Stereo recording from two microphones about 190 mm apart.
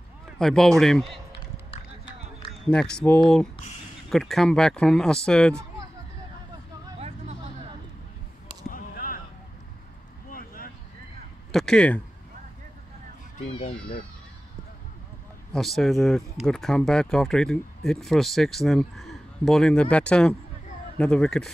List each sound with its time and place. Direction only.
0.4 s speech: centre (ahead or behind)
2.6 s speech: 5° left (ahead or behind)
8.6 s a sound: 45° left (ahead or behind)
10.3 s a sound: 50° left (ahead or behind)
11.5 s speech: 5° left (ahead or behind)
13.5 s speech: 30° left (ahead or behind)
15.5 s speech: centre (ahead or behind)